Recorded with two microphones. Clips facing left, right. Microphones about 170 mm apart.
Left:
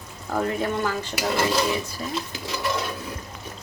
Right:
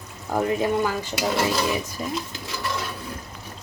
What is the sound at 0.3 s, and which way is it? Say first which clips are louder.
Speech: right 3 dB; 15° right (ahead or behind).